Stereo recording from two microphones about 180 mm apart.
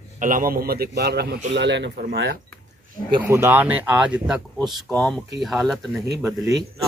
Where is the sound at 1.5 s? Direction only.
75° right (ahead or behind).